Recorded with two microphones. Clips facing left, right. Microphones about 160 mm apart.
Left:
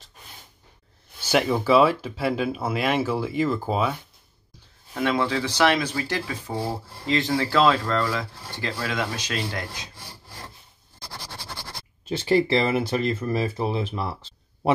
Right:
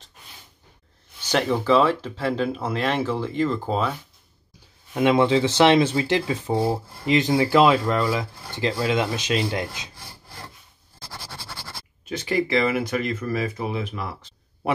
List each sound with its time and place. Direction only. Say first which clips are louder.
1.2 s speech: even; 10° left (ahead or behind)
4.9 s speech: right 6 dB; 20° right (ahead or behind)
12.1 s speech: left 3 dB; 30° left (ahead or behind)